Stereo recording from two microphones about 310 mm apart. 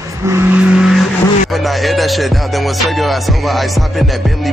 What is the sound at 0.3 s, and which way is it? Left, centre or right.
Vehicle, centre.